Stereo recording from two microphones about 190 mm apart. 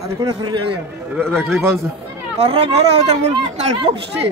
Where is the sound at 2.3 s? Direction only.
30° right (ahead or behind).